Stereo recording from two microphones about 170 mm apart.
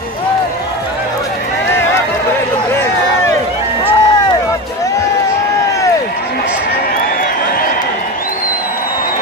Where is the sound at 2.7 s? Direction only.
15° left (ahead or behind).